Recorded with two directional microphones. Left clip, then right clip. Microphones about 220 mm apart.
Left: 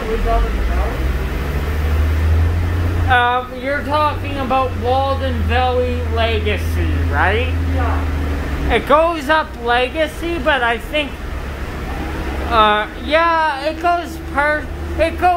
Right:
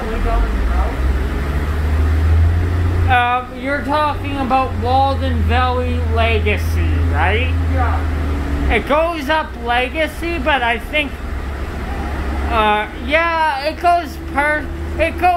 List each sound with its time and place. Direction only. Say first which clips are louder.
3.1 s speech: left 1 dB; 10° left (ahead or behind)
7.2 s speech: left 1 dB; 20° left (ahead or behind)
8.6 s speech: left 2 dB; 15° left (ahead or behind)
12.5 s speech: left 2 dB; 15° left (ahead or behind)